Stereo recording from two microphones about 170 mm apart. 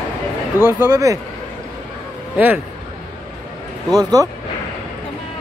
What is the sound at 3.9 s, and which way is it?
Speech, 20° right (ahead or behind).